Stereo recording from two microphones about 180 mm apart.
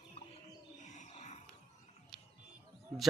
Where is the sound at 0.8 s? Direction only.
40° left (ahead or behind).